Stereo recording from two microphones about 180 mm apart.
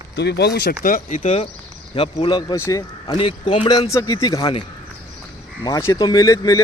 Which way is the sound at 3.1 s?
30° left (ahead or behind).